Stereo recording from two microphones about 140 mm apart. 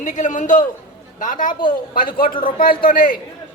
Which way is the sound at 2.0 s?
90° left.